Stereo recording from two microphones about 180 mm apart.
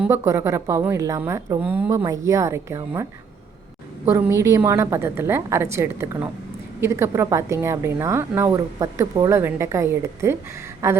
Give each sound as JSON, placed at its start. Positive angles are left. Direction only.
{"t": 0.0, "sound": "a woman's voice", "side_deg": -15}
{"t": 4.1, "sound": "a woman's voice", "side_deg": -15}